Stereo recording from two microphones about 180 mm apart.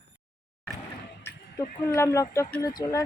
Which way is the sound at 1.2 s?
15° left (ahead or behind).